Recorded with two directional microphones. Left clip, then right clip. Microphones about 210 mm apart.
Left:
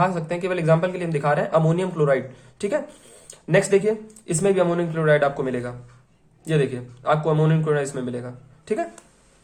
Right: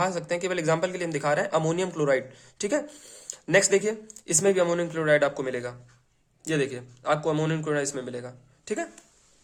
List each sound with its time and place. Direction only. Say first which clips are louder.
0.0 s a man's voice: left 4 dB; 30° right (ahead or behind)